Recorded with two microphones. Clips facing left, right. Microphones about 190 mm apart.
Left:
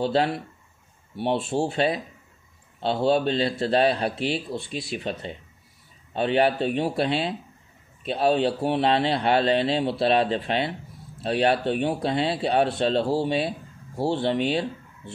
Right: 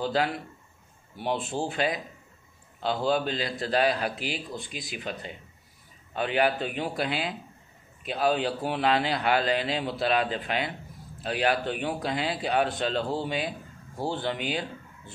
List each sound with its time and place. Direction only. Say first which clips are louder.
0.0 s a man's voice: left 4 dB; 25° left (ahead or behind)